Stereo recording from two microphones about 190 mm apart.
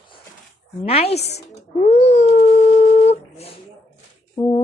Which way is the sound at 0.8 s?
30° left (ahead or behind).